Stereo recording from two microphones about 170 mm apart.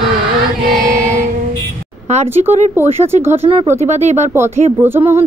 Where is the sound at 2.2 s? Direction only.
10° right (ahead or behind).